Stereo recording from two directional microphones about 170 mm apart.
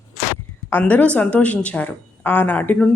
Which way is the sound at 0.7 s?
10° left (ahead or behind).